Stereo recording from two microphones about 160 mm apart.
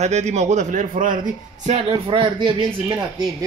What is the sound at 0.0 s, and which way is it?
Speech, 45° right (ahead or behind).